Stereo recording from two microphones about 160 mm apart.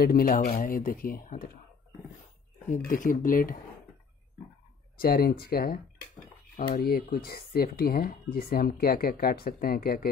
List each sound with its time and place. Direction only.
0.0 s speech: 65° left (ahead or behind)
2.7 s speech: 55° left (ahead or behind)
4.9 s speech: 75° left (ahead or behind)